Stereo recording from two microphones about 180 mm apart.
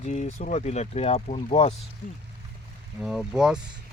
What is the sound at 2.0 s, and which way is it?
Speech, 50° left (ahead or behind).